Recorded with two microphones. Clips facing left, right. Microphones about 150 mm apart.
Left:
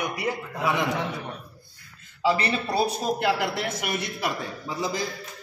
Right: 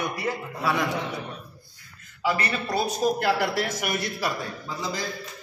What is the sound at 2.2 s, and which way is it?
A man's voice, 25° left (ahead or behind).